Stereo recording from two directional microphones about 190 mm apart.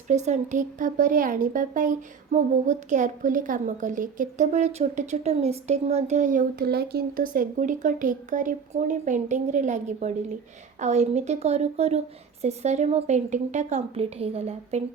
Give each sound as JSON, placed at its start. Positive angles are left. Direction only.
{"t": 0.1, "sound": "speech", "side_deg": -40}